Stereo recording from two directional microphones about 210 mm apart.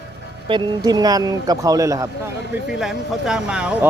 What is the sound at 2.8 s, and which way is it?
Speech, centre (ahead or behind).